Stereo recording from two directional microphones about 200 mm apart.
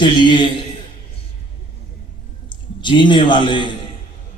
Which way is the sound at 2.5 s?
25° left (ahead or behind).